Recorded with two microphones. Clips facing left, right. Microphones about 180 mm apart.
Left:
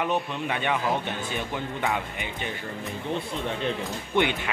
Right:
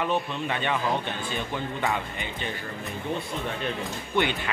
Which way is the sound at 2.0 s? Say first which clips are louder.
Left 1 dB; 15° left (ahead or behind).